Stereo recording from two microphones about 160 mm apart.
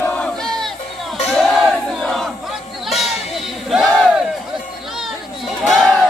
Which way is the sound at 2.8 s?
Centre (ahead or behind).